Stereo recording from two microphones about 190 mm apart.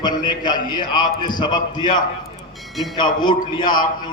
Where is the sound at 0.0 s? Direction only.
25° left (ahead or behind).